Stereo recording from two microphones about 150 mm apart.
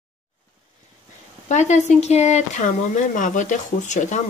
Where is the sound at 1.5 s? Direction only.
50° left (ahead or behind).